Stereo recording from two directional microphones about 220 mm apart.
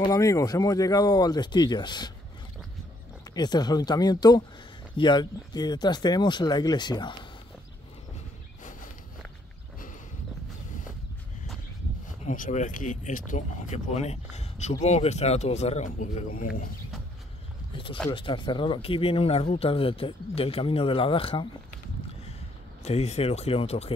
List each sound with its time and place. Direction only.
0.0 s speech: 15° left (ahead or behind)
3.3 s speech: 20° left (ahead or behind)
12.3 s speech: 35° left (ahead or behind)
18.1 s speech: 20° left (ahead or behind)
22.8 s speech: 30° left (ahead or behind)